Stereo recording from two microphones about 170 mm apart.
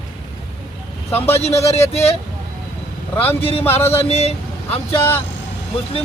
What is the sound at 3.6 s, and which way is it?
Music, 15° left (ahead or behind).